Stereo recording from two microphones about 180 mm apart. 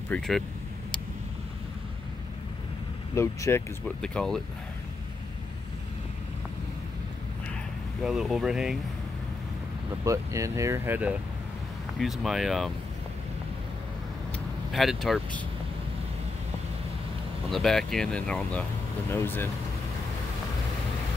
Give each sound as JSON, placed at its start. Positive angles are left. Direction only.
{"t": 0.1, "sound": "speech", "side_deg": 5}
{"t": 3.2, "sound": "speech", "side_deg": 15}
{"t": 4.0, "sound": "speech", "side_deg": 5}
{"t": 8.0, "sound": "speech", "side_deg": -5}
{"t": 10.0, "sound": "speech", "side_deg": -15}
{"t": 14.7, "sound": "speech", "side_deg": 0}
{"t": 17.5, "sound": "speech", "side_deg": 0}